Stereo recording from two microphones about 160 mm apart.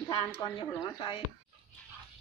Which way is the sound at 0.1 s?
30° left (ahead or behind).